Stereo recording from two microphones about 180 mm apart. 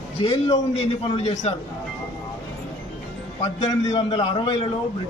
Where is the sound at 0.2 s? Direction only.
30° left (ahead or behind).